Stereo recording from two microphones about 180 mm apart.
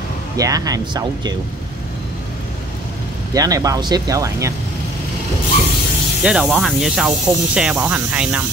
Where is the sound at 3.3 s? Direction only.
20° right (ahead or behind).